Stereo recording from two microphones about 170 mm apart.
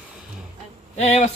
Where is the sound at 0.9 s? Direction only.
40° left (ahead or behind).